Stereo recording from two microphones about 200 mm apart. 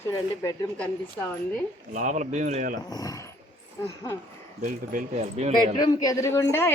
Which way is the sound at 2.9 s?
20° left (ahead or behind).